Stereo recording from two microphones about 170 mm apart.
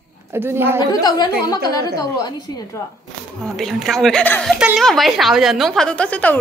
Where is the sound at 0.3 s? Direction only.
15° right (ahead or behind).